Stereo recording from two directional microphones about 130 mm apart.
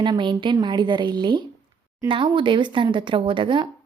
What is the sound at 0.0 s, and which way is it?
Speech, 35° right (ahead or behind).